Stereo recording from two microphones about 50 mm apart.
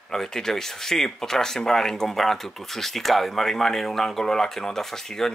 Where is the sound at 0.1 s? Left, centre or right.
Centre.